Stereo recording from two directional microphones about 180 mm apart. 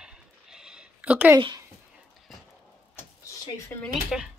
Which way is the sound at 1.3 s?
25° right (ahead or behind).